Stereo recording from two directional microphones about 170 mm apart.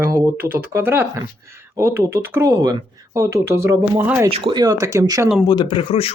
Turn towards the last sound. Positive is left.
turn(degrees=35)  # may be behind; listen again after turning